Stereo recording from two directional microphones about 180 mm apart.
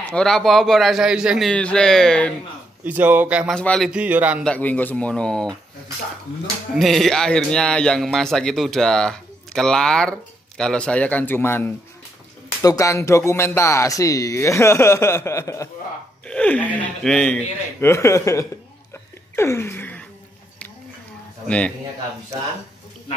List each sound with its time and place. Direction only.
0.1 s a man's voice: centre (ahead or behind)
2.8 s speech: 10° right (ahead or behind)
3.5 s a man's voice: 5° left (ahead or behind)
3.9 s speech: 10° right (ahead or behind)
4.5 s a man's voice: 10° left (ahead or behind)
6.8 s a man's voice: centre (ahead or behind)
19.3 s a sound: 15° left (ahead or behind)
21.5 s speech: 5° left (ahead or behind)